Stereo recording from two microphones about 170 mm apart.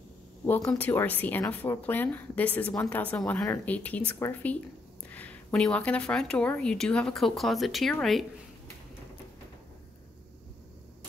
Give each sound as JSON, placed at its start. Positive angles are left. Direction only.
{"t": 0.5, "sound": "a woman's voice", "side_deg": 10}